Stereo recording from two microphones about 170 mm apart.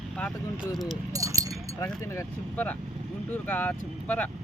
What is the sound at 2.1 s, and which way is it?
Speech, 10° left (ahead or behind).